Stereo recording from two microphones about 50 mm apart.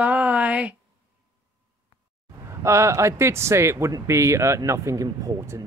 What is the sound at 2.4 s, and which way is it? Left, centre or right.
Speech, right.